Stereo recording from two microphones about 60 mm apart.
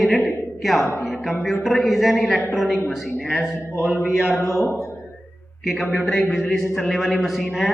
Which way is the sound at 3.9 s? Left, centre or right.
Left.